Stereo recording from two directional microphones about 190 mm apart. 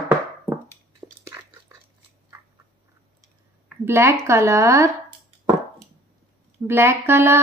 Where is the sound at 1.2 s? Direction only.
15° right (ahead or behind).